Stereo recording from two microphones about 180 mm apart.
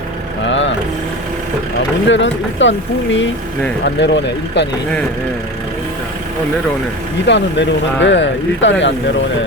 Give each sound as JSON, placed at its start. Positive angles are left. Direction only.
{"t": 0.4, "sound": "vehicle", "side_deg": 90}
{"t": 2.0, "sound": "speech", "side_deg": 90}
{"t": 3.8, "sound": "speech", "side_deg": 75}
{"t": 7.3, "sound": "speech", "side_deg": 85}